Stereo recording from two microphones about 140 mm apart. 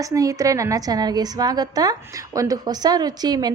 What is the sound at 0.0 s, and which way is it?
A woman's voice, 25° right (ahead or behind).